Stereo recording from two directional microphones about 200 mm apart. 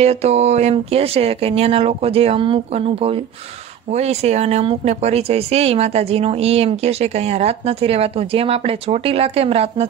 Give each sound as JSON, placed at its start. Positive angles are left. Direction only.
{"t": 0.0, "sound": "speech", "side_deg": -30}